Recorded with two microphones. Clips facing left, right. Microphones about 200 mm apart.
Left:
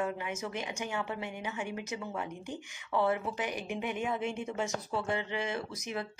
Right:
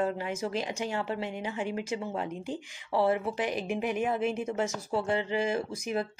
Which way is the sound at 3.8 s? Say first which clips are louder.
Right 4 dB; 80° right.